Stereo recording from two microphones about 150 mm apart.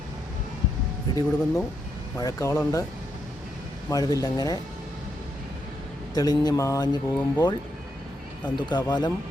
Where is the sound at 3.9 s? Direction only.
25° left (ahead or behind).